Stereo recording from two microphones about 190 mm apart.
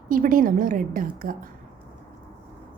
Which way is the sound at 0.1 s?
45° right (ahead or behind).